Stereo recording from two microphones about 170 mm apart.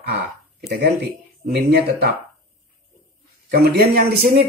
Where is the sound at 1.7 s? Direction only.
70° right (ahead or behind).